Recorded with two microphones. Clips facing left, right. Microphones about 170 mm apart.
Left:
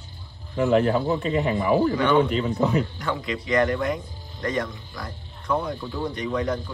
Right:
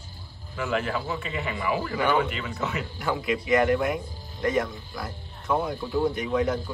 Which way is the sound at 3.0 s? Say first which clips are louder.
Right 1 dB; 5° right (ahead or behind).